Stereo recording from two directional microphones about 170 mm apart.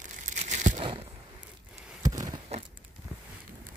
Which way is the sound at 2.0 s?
20° right (ahead or behind).